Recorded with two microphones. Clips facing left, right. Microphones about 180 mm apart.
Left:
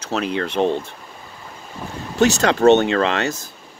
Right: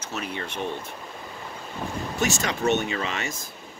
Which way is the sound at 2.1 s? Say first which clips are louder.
Left 11 dB; 80° left.